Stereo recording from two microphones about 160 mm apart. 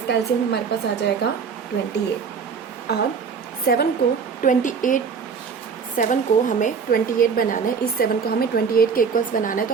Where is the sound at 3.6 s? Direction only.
70° left (ahead or behind).